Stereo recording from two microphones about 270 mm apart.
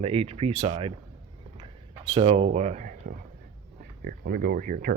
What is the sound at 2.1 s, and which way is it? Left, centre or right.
Speech, right.